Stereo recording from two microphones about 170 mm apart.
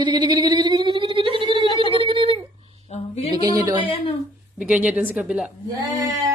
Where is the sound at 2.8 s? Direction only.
35° left (ahead or behind).